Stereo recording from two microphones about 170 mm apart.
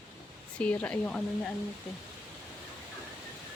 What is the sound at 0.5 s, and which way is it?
Speech, 10° left (ahead or behind).